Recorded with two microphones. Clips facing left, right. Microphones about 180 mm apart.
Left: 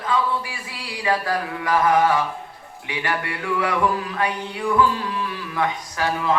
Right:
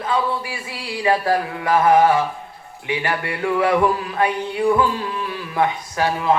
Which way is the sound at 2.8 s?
30° right (ahead or behind).